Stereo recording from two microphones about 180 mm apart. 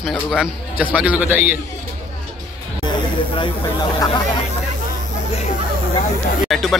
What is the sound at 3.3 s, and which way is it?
Speech, 25° left (ahead or behind).